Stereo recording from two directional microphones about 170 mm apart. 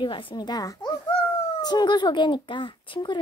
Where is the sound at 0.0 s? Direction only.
30° left (ahead or behind).